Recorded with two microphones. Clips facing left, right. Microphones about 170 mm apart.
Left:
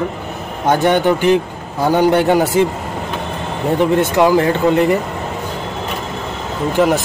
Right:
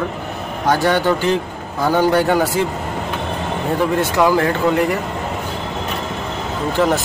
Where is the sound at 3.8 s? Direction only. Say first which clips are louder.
Left 4 dB; 20° left (ahead or behind).